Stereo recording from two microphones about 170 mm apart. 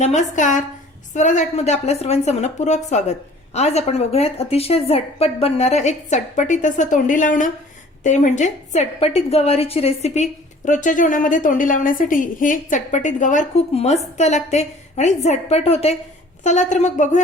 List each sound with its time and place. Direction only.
0.0 s a woman's voice: 45° left (ahead or behind)
10.7 s a woman's voice: 50° left (ahead or behind)